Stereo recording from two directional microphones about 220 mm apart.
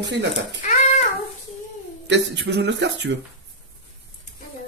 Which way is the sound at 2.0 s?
55° right (ahead or behind).